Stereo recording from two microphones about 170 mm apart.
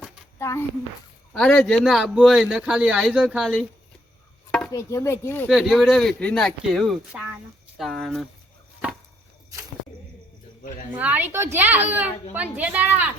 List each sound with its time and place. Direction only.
0.3 s a child's voice: 15° left (ahead or behind)
1.3 s speech: 5° left (ahead or behind)
4.7 s speech: 20° left (ahead or behind)
5.5 s speech: centre (ahead or behind)
10.9 s a woman's voice: 10° right (ahead or behind)